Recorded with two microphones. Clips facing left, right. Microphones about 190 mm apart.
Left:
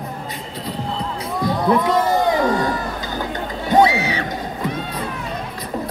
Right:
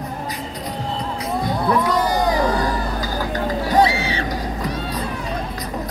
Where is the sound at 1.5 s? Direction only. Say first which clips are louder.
Left 3 dB; 25° left (ahead or behind).